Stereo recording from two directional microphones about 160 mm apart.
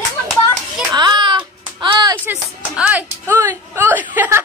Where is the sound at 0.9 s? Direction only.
25° right (ahead or behind).